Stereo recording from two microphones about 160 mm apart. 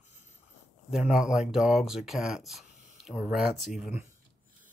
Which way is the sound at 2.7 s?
50° right (ahead or behind).